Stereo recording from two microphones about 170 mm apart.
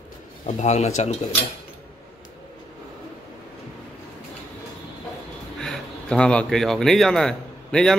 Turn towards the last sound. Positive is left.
turn(degrees=5)  # may be behind; listen again after turning